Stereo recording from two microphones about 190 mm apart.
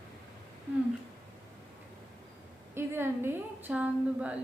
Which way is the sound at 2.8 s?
10° right (ahead or behind).